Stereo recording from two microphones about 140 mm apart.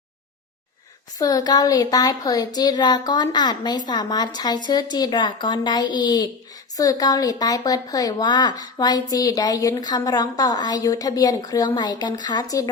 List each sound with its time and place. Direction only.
1.2 s speech: 30° left (ahead or behind)